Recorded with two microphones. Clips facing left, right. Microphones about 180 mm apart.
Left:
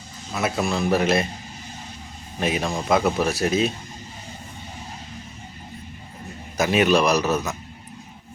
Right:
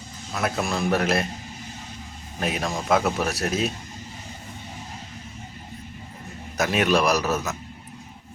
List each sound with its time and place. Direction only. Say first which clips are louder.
0.3 s speech: left 2 dB; centre (ahead or behind)
2.4 s speech: left 3 dB; centre (ahead or behind)
6.6 s speech: left 3 dB; centre (ahead or behind)